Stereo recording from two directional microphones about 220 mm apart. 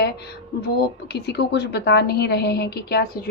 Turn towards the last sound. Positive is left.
turn(degrees=45)  # may be behind; listen again after turning